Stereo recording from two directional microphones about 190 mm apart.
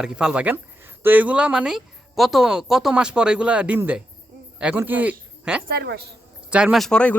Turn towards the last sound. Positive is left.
turn(degrees=5)  # may be behind; listen again after turning